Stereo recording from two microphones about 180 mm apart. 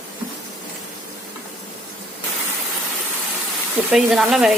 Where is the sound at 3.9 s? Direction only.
Centre (ahead or behind).